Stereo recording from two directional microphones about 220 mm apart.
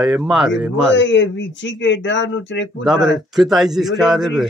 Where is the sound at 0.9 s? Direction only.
55° left (ahead or behind).